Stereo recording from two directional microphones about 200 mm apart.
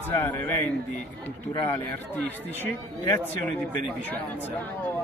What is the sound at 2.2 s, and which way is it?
Speech, 10° left (ahead or behind).